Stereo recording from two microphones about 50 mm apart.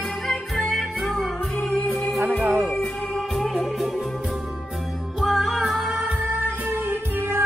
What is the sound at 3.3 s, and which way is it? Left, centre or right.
Music, centre.